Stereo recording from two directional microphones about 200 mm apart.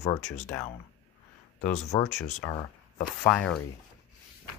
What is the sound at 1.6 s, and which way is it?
Speech, 35° left (ahead or behind).